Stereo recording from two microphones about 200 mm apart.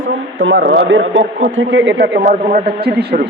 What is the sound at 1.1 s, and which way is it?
Speech, 40° right (ahead or behind).